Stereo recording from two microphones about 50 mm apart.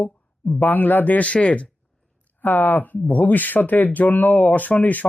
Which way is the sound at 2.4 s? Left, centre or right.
Left.